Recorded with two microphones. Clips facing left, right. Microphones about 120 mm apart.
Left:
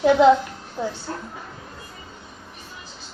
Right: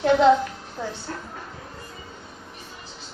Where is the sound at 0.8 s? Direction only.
10° left (ahead or behind).